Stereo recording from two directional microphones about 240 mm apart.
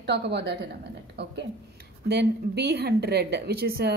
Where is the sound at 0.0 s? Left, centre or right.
Right.